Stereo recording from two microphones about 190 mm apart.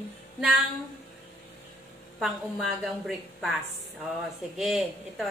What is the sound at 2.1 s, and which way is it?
A woman's voice, centre (ahead or behind).